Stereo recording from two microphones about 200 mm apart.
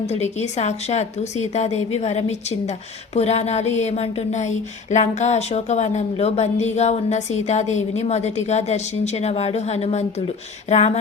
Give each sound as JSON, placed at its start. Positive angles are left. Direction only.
{"t": 0.1, "sound": "speech", "side_deg": 35}